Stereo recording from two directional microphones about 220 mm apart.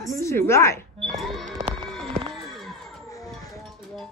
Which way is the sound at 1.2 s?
Centre (ahead or behind).